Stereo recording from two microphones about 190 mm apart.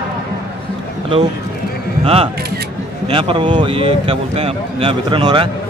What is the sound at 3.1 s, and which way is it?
Speech, 25° right (ahead or behind).